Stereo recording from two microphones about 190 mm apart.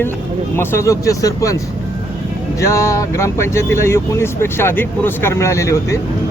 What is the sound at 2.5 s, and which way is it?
Speech, 15° left (ahead or behind).